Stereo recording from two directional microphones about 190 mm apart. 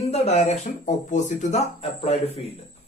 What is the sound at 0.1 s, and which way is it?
Speech, 35° left (ahead or behind).